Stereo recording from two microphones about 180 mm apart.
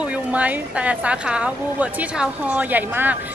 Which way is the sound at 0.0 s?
5° right (ahead or behind).